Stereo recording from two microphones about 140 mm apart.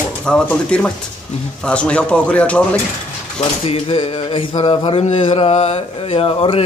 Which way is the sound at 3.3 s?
40° left (ahead or behind).